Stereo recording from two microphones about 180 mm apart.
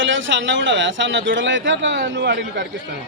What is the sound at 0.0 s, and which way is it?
A man's voice, 90° right.